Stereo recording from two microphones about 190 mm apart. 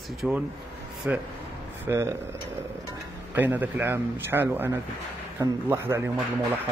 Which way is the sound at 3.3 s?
10° right (ahead or behind).